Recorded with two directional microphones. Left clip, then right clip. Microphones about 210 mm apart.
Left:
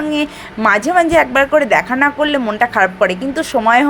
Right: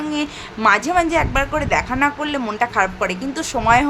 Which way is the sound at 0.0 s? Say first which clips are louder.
Left 5 dB; 10° left (ahead or behind).